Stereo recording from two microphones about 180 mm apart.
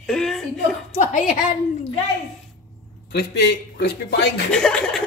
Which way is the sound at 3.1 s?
65° left (ahead or behind).